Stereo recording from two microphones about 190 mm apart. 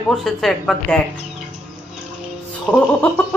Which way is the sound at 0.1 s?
Centre (ahead or behind).